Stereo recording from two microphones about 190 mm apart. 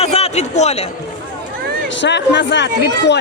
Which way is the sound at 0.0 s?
35° left (ahead or behind).